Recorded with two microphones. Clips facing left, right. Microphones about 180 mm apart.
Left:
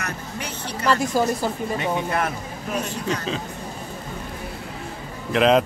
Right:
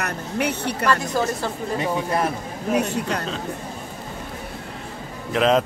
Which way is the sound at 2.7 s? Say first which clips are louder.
Right 6 dB; 65° right (ahead or behind).